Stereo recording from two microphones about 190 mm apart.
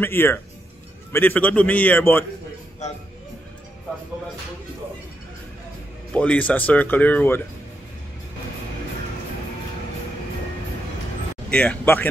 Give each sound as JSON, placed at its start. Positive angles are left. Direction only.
{"t": 0.0, "sound": "speech", "side_deg": 10}
{"t": 2.8, "sound": "speech", "side_deg": 35}
{"t": 6.1, "sound": "speech", "side_deg": 5}
{"t": 11.5, "sound": "speech", "side_deg": 5}